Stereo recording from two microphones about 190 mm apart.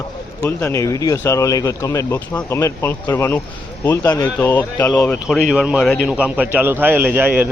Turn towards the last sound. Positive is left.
turn(degrees=-10)  # may be behind; listen again after turning